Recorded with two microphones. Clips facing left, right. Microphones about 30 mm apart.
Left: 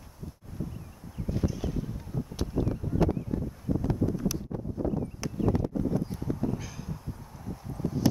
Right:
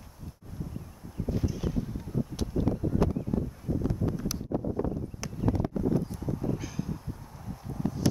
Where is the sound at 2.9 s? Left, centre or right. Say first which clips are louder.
Right 3 dB; centre.